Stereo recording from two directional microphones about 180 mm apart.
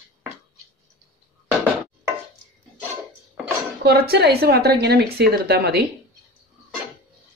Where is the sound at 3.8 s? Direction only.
65° right (ahead or behind).